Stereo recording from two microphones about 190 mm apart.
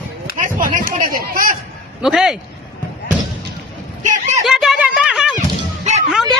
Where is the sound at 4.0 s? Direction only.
40° right (ahead or behind).